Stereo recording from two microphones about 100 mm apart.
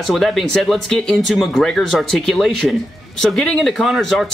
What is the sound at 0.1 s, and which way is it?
Speech, centre (ahead or behind).